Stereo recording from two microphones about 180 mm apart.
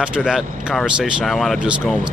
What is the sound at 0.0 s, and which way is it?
Speech, 5° right (ahead or behind).